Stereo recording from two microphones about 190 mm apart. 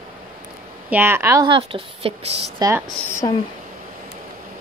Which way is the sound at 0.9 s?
10° right (ahead or behind).